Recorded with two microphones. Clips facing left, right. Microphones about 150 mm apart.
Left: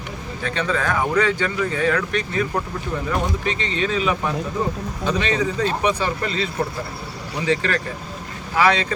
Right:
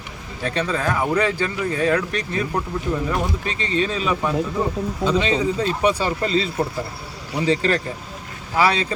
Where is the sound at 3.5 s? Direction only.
35° right (ahead or behind).